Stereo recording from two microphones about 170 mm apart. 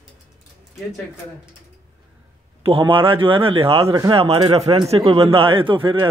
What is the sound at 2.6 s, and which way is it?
A man's voice, 30° right (ahead or behind).